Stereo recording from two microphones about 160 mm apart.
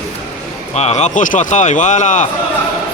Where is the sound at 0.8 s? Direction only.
45° left (ahead or behind).